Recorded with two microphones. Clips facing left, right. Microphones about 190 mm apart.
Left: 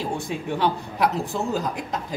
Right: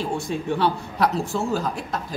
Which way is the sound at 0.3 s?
15° left (ahead or behind).